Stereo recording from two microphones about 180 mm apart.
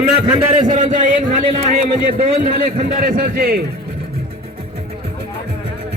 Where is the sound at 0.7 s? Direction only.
45° right (ahead or behind).